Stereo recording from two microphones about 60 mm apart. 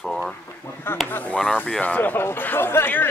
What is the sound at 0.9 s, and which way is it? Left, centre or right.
Speech, left.